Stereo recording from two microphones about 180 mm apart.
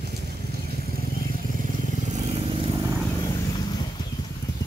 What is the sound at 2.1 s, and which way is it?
Vehicle, 35° right (ahead or behind).